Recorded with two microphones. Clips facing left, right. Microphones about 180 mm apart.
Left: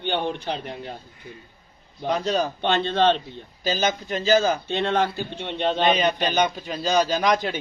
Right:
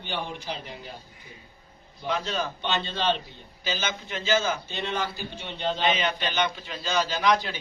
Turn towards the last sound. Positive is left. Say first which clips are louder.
# left 3 dB
turn(degrees=45)  # may be behind; listen again after turning